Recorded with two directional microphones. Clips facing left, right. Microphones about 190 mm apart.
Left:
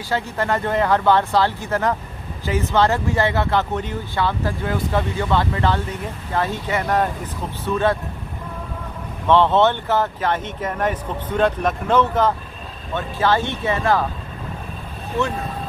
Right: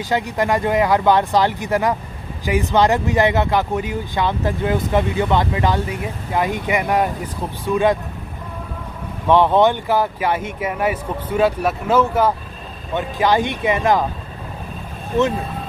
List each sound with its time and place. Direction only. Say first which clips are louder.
0.1 s speech: right 3 dB; 15° right (ahead or behind)
9.3 s speech: right 2 dB; 15° right (ahead or behind)